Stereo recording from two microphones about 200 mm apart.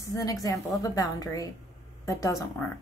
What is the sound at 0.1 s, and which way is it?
Speech, 15° left (ahead or behind).